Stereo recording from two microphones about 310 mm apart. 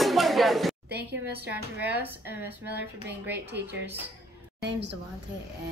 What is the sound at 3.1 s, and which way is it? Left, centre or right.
Speech, right.